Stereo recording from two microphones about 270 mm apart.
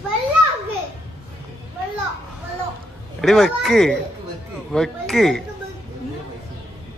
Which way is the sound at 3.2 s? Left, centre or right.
Centre.